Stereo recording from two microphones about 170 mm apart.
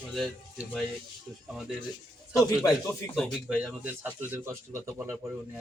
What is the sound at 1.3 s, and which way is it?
Speech, 10° left (ahead or behind).